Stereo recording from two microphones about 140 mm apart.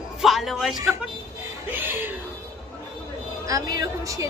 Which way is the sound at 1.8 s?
15° right (ahead or behind).